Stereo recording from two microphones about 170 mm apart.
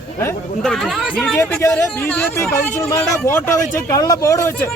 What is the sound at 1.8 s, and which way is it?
Speech, 15° left (ahead or behind).